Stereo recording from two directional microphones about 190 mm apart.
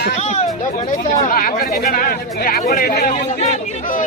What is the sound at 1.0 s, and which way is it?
Speech, 45° left (ahead or behind).